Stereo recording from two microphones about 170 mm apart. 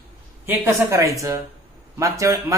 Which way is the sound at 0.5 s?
15° right (ahead or behind).